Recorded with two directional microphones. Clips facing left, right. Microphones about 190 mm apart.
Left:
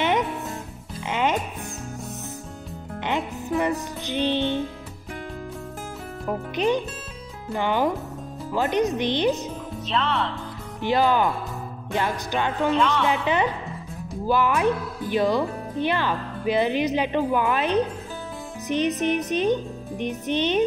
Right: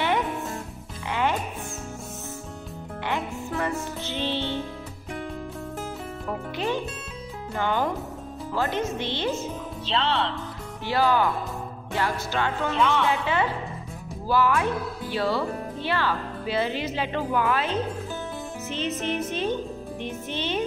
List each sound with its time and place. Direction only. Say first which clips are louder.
0.0 s music: left 2 dB; 20° left (ahead or behind)
3.1 s music: left 4 dB; 20° left (ahead or behind)
6.2 s music: left 6 dB; 20° left (ahead or behind)
7.5 s speech: left 3 dB; 15° left (ahead or behind)
9.8 s speech: even; 30° right (ahead or behind)
10.8 s a woman's voice: left 2 dB; 20° left (ahead or behind)